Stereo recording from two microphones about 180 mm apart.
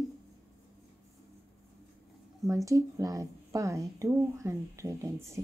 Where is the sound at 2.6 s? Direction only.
15° right (ahead or behind).